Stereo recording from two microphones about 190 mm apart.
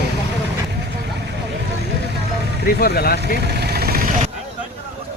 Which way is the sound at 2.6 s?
55° left (ahead or behind).